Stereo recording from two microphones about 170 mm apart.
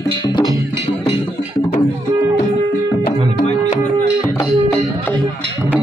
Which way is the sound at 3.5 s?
45° left (ahead or behind).